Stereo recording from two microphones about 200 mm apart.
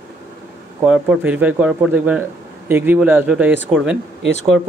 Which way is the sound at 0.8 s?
5° right (ahead or behind).